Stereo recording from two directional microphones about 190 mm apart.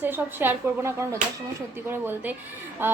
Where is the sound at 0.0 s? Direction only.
10° right (ahead or behind).